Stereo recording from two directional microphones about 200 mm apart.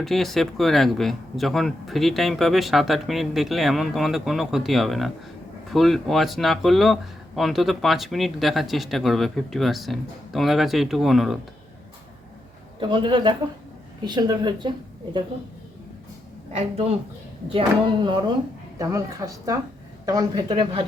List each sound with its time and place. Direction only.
0.0 s speech: centre (ahead or behind)
12.8 s speech: 25° right (ahead or behind)
16.5 s a woman's voice: 30° right (ahead or behind)